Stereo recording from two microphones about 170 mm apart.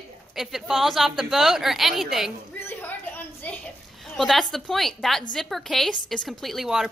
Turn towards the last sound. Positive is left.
turn(degrees=0)  # may be behind; listen again after turning